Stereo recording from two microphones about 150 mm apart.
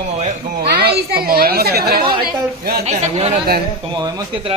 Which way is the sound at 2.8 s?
45° right (ahead or behind).